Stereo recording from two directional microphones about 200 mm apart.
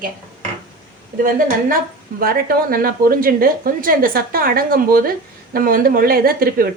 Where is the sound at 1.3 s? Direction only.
45° right (ahead or behind).